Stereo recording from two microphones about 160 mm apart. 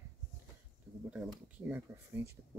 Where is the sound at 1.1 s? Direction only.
5° right (ahead or behind).